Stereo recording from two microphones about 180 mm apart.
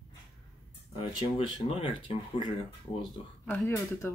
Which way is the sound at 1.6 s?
30° left (ahead or behind).